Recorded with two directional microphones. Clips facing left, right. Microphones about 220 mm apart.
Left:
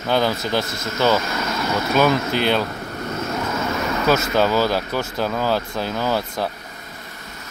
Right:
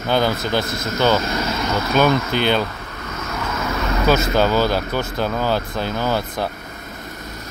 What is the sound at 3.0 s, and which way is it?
Vehicle, 30° left (ahead or behind).